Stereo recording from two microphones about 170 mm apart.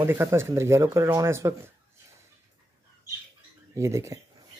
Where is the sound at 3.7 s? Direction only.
15° right (ahead or behind).